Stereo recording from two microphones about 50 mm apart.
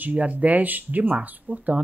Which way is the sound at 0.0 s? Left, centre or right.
Right.